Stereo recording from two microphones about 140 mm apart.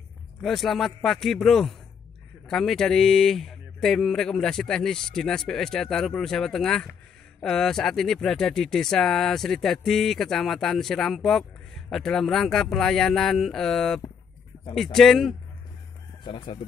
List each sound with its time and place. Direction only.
0.4 s speech: centre (ahead or behind)
16.3 s speech: 35° left (ahead or behind)